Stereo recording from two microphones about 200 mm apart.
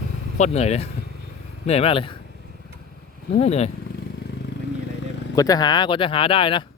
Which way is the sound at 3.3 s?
30° left (ahead or behind).